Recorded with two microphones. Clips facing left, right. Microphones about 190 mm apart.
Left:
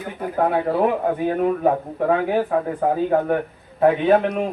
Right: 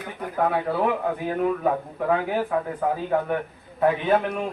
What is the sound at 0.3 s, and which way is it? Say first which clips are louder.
A man's voice: left 4 dB; 35° left (ahead or behind).